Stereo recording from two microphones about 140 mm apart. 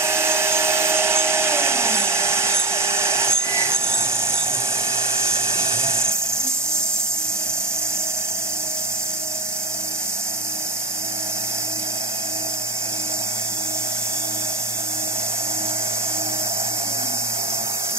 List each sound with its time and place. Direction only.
0.0 s hair dryer: 20° right (ahead or behind)
5.6 s dental drill: 40° right (ahead or behind)